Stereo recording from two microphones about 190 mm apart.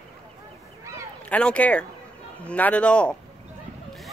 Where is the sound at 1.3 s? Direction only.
5° left (ahead or behind).